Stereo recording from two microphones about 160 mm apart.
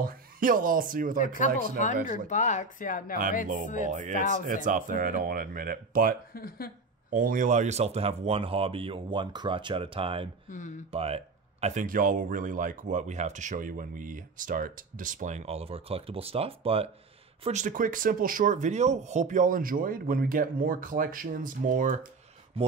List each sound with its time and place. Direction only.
0.0 s speech: 60° right (ahead or behind)
1.1 s speech: 55° left (ahead or behind)
3.8 s speech: 50° right (ahead or behind)
6.3 s speech: 70° left (ahead or behind)
7.1 s speech: 60° right (ahead or behind); by 11.1 s 40° right (ahead or behind)
11.6 s speech: 55° right (ahead or behind)